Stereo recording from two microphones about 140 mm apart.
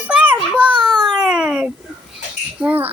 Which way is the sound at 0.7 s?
30° right (ahead or behind).